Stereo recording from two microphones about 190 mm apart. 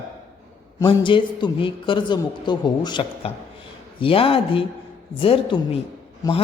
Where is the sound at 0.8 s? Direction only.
25° left (ahead or behind).